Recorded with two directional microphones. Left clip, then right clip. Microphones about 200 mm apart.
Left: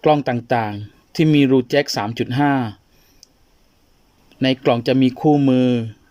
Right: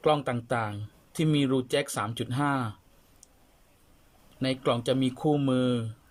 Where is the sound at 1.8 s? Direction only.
40° left (ahead or behind).